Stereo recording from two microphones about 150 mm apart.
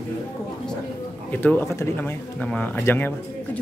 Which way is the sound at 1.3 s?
10° left (ahead or behind).